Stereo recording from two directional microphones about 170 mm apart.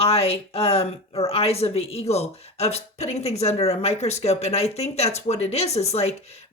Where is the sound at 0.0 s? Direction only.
35° left (ahead or behind).